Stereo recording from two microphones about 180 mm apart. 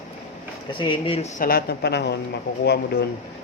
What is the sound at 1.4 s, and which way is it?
Speech, 55° left (ahead or behind).